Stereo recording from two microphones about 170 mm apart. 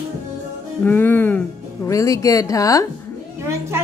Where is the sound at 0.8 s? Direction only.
10° left (ahead or behind).